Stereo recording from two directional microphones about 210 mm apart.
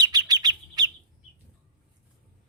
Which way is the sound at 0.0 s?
20° right (ahead or behind).